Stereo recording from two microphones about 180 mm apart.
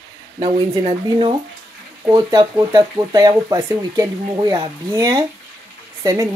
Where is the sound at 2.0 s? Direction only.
15° right (ahead or behind).